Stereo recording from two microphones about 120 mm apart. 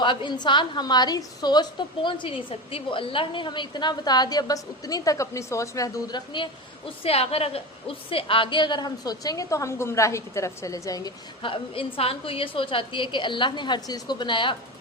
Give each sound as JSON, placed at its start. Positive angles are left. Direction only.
{"t": 0.0, "sound": "a woman's voice", "side_deg": 40}
{"t": 2.0, "sound": "a woman's voice", "side_deg": 45}
{"t": 11.4, "sound": "a woman's voice", "side_deg": 50}